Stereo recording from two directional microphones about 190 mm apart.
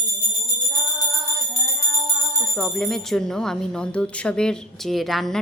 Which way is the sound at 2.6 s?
5° left (ahead or behind).